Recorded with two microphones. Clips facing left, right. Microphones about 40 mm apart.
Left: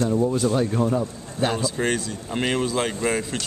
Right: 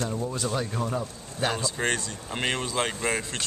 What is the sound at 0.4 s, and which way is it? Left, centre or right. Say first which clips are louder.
Speech: left 8 dB; centre.